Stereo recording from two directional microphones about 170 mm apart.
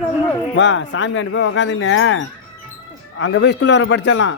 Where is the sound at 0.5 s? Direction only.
90° left.